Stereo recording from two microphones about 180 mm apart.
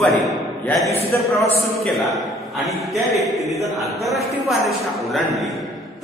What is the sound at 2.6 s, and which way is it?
Speech, centre (ahead or behind).